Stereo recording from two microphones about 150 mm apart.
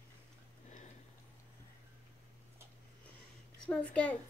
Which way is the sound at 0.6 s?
50° left (ahead or behind).